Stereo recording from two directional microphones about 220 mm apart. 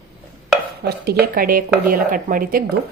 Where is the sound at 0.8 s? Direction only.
45° right (ahead or behind).